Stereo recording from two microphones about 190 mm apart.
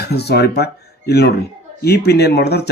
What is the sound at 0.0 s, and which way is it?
Speech, 60° left (ahead or behind).